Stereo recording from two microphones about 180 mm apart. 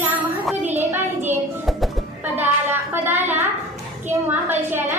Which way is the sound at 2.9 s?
10° right (ahead or behind).